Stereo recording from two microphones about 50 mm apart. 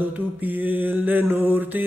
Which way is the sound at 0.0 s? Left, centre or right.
Right.